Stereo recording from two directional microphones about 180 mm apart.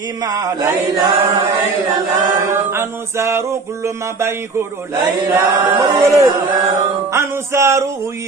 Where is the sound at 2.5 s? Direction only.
15° right (ahead or behind).